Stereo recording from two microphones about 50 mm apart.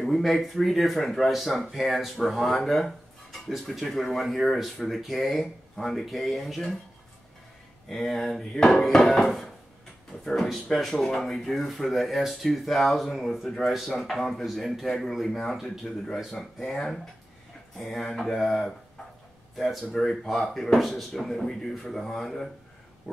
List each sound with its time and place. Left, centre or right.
0.0 s speech: centre
7.9 s speech: centre
8.5 s speech: centre
8.8 s speech: centre
10.5 s speech: centre